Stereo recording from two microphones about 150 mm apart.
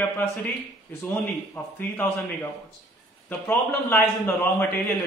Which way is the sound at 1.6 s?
15° left (ahead or behind).